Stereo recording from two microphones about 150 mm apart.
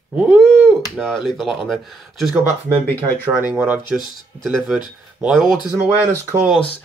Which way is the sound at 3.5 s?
10° right (ahead or behind).